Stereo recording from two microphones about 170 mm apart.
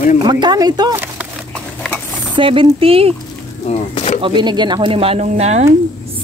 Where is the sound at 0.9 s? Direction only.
10° right (ahead or behind).